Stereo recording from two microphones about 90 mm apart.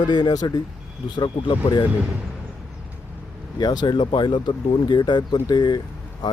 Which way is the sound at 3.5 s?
55° left (ahead or behind).